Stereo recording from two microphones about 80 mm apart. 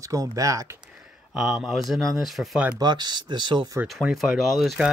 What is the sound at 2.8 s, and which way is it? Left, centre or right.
Speech, right.